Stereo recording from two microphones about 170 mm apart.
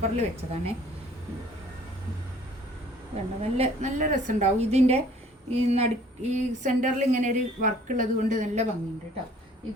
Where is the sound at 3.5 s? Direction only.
40° right (ahead or behind).